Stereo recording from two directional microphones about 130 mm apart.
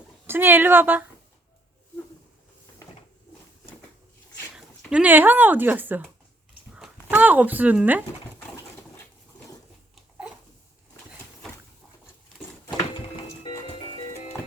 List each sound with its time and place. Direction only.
0.3 s a woman's voice: 15° right (ahead or behind)
4.5 s speech: 5° right (ahead or behind)